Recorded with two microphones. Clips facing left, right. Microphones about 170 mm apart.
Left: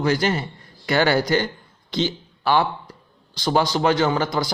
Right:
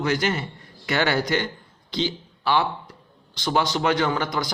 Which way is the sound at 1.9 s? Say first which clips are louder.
Left 3 dB; 45° left (ahead or behind).